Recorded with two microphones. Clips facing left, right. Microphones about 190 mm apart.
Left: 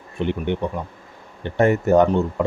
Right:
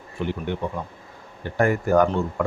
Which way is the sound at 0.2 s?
20° left (ahead or behind).